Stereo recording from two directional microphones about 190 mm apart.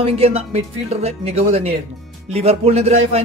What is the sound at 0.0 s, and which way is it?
Speech, 30° right (ahead or behind).